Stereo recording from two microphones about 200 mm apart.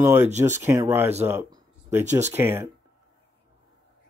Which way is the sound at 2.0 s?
35° right (ahead or behind).